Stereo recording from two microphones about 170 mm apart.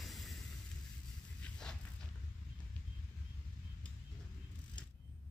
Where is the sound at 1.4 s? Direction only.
5° left (ahead or behind).